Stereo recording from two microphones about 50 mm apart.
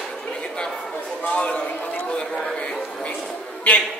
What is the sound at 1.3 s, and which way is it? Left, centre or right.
Speech, left.